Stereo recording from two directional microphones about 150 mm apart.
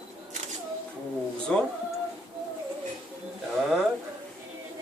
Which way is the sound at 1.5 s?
5° left (ahead or behind).